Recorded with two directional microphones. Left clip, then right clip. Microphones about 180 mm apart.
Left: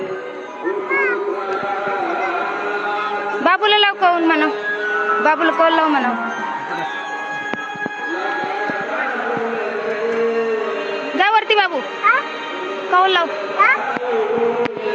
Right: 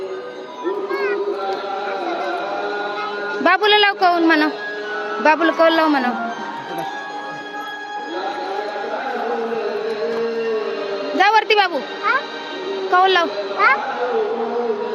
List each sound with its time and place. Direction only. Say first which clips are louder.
3.4 s a woman's voice: even; 25° right (ahead or behind)
11.2 s a sound: even; 15° right (ahead or behind)
12.9 s a child's voice: even; 25° right (ahead or behind)